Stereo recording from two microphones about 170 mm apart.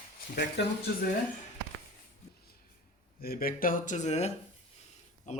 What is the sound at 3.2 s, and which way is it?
A man's voice, 60° left (ahead or behind).